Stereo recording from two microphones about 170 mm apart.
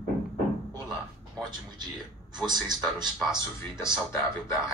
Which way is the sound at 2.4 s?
25° right (ahead or behind).